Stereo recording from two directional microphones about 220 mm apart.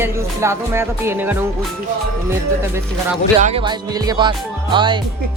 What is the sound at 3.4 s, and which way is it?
Music, 25° right (ahead or behind).